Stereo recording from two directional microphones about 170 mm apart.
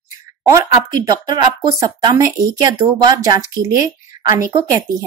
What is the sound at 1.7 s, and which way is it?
A woman's voice, 20° right (ahead or behind).